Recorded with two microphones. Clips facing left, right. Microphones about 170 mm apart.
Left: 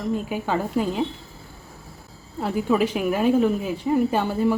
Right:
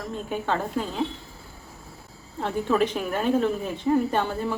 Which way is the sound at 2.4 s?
5° left (ahead or behind).